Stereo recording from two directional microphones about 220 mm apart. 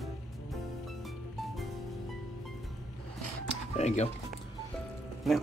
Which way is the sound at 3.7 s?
30° left (ahead or behind).